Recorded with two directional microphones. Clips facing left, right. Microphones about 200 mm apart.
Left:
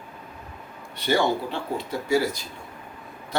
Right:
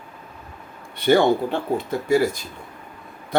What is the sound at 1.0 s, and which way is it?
Speech, 55° right (ahead or behind).